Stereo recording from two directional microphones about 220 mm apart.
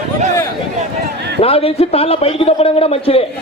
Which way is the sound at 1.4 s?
25° left (ahead or behind).